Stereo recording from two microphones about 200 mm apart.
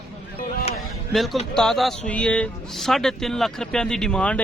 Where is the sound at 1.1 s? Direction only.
Centre (ahead or behind).